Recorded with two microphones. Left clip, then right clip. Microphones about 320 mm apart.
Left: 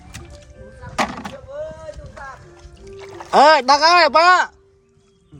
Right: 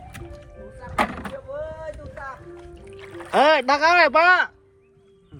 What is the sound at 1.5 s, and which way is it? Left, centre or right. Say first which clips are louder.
Vehicle: left 3 dB; right.